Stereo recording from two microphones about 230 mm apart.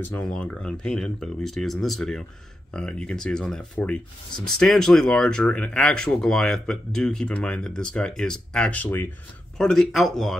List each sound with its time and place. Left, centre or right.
0.0 s speech: centre